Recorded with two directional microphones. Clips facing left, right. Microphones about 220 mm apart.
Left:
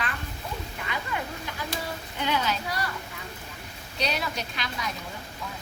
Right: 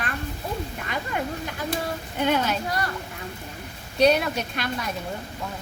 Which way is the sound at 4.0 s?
55° right (ahead or behind).